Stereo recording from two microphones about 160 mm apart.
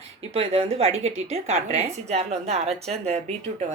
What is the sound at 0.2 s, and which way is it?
Speech, 40° right (ahead or behind).